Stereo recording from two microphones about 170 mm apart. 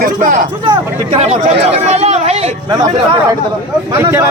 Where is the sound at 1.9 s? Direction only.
40° right (ahead or behind).